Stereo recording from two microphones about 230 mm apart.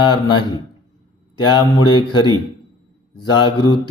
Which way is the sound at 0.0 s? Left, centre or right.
Centre.